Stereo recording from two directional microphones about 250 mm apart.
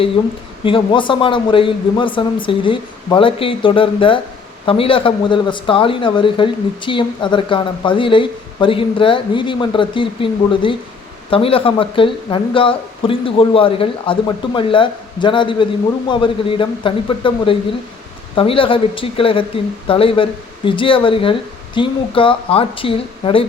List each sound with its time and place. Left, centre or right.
0.6 s speech: centre